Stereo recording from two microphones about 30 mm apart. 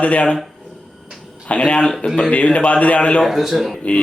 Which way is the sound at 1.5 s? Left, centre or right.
Left.